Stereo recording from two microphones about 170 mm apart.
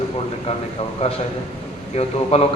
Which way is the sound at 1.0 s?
35° left (ahead or behind).